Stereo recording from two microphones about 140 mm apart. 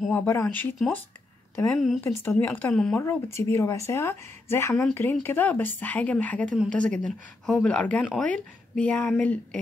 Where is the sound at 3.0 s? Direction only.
20° left (ahead or behind).